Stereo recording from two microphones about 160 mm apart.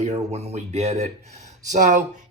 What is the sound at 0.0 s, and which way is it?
Speech, 45° right (ahead or behind).